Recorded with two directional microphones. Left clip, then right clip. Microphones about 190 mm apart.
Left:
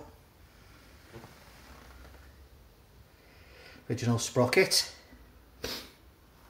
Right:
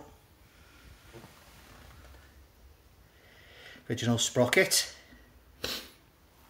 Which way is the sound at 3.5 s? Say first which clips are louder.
Right 1 dB; 20° right (ahead or behind).